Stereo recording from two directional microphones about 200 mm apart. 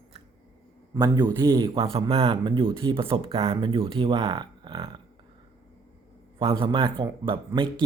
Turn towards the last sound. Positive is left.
turn(degrees=-25)  # may be behind; listen again after turning